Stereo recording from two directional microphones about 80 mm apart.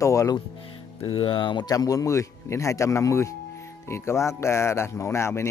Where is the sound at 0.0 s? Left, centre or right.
Left.